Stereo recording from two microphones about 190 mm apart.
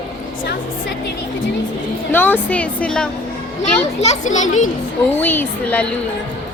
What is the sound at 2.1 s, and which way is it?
A woman's voice, 10° left (ahead or behind).